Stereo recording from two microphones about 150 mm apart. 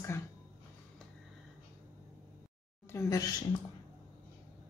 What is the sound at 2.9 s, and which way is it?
Speech, 20° left (ahead or behind).